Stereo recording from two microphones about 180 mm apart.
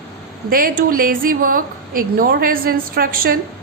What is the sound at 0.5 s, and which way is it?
A woman's voice, 50° right (ahead or behind).